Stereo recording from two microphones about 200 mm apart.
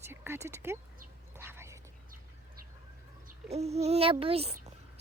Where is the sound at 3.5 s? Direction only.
30° right (ahead or behind).